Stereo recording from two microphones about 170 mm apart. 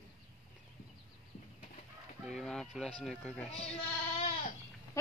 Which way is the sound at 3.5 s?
35° left (ahead or behind).